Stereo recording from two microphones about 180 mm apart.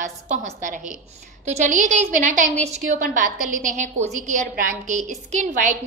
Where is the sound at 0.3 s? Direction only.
40° right (ahead or behind).